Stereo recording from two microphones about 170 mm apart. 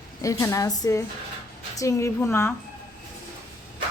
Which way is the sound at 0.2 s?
20° left (ahead or behind).